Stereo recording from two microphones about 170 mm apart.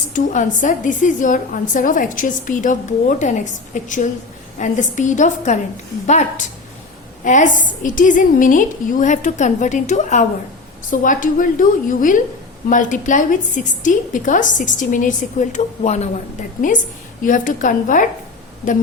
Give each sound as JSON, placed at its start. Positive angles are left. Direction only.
{"t": 0.1, "sound": "a woman's voice", "side_deg": 50}